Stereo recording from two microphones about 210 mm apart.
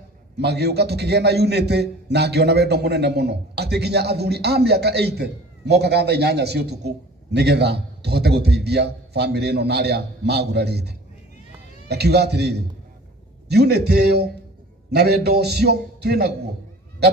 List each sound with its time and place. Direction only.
0.4 s a man's voice: 50° right (ahead or behind)